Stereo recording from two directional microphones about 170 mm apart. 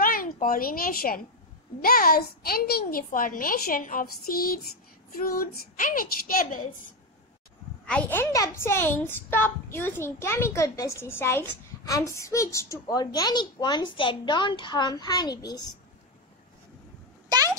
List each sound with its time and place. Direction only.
0.0 s a woman's voice: 55° left (ahead or behind)
7.8 s a woman's voice: 5° left (ahead or behind); by 15.7 s 25° left (ahead or behind)
17.3 s a sound: 25° right (ahead or behind)